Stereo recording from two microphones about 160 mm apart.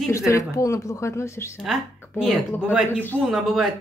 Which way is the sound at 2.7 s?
10° right (ahead or behind).